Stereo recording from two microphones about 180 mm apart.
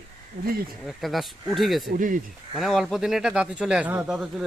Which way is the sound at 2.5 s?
Centre (ahead or behind).